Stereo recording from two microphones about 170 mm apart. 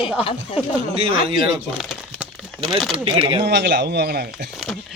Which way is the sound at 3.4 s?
80° right.